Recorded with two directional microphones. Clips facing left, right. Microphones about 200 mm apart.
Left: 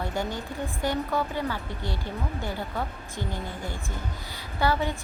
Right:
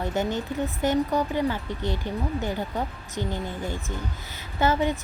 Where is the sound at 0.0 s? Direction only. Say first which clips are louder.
Right 4 dB; 20° right (ahead or behind).